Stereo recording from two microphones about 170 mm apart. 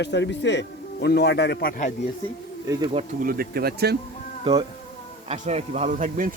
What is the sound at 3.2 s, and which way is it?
Speech, 60° right (ahead or behind).